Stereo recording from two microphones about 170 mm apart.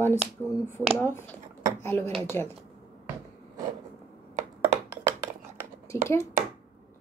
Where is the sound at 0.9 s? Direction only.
15° left (ahead or behind).